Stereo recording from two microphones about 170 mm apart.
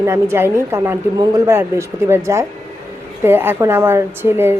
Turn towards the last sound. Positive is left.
turn(degrees=-15)  # may be behind; listen again after turning